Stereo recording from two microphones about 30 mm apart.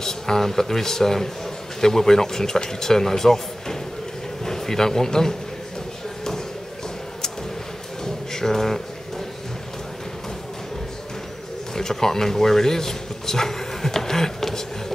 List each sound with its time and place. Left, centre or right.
0.0 s a man's voice: centre
8.0 s a sound: centre
11.7 s speech: centre